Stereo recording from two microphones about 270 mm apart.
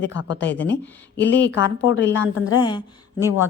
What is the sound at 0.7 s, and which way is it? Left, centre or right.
Speech, left.